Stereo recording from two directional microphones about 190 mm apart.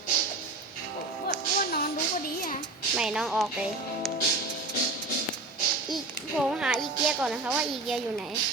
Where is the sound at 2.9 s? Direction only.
5° right (ahead or behind).